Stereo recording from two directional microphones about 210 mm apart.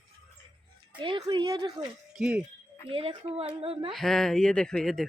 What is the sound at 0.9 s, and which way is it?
Speech, 25° right (ahead or behind).